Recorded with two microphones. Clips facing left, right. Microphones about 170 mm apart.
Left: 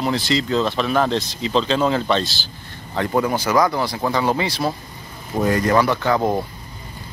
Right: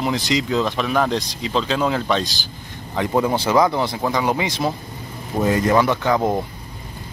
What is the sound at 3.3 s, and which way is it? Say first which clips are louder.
Speech: right 1 dB; 25° right (ahead or behind).